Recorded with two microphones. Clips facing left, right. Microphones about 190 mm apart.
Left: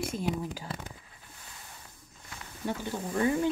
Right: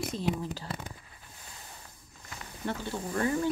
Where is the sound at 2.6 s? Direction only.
15° left (ahead or behind).